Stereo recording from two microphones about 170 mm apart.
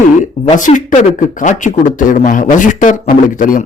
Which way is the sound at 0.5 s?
50° left (ahead or behind).